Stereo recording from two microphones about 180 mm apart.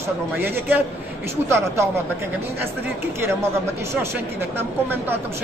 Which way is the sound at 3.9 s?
15° right (ahead or behind).